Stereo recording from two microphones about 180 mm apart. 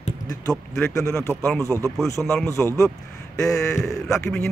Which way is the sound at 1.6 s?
15° right (ahead or behind).